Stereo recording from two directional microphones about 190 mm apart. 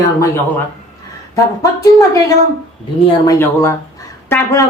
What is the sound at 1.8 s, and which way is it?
Speech, 15° left (ahead or behind).